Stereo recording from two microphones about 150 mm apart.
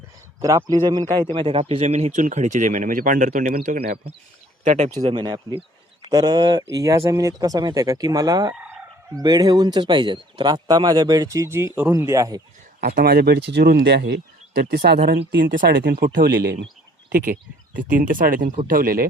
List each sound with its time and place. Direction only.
0.3 s speech: 20° right (ahead or behind)
1.5 s speech: 40° right (ahead or behind); by 3.9 s 70° right (ahead or behind)
4.6 s speech: 55° right (ahead or behind)
5.0 s speech: 35° right (ahead or behind)
12.8 s speech: 90° right
17.1 s speech: 70° right (ahead or behind)